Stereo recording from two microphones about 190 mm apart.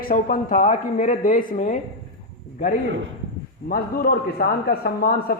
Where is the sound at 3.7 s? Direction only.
50° left (ahead or behind).